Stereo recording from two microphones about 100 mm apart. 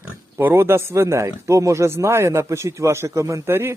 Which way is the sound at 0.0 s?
20° right (ahead or behind).